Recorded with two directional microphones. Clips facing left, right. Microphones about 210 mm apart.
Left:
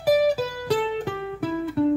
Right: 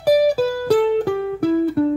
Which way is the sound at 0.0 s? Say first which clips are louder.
Right 5 dB; 40° right (ahead or behind).